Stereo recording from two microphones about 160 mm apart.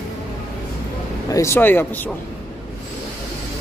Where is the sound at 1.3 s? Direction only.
15° left (ahead or behind).